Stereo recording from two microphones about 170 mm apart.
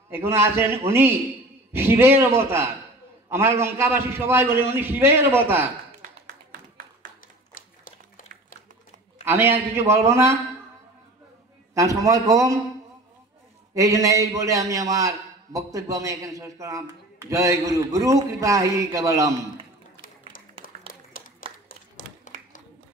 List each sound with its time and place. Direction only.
0.1 s a man's voice: 15° right (ahead or behind)
6.0 s a sound: 55° right (ahead or behind)
9.2 s a man's voice: 10° right (ahead or behind)
11.7 s a man's voice: 20° right (ahead or behind)
13.7 s a man's voice: 20° right (ahead or behind)
20.6 s a sound: 55° left (ahead or behind)